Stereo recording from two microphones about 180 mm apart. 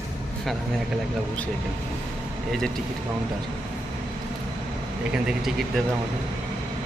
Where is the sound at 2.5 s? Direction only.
Centre (ahead or behind).